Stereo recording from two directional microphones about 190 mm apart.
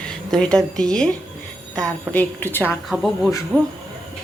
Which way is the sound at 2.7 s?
Centre (ahead or behind).